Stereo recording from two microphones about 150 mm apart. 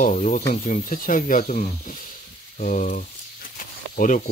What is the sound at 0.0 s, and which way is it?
Speech, 60° left (ahead or behind).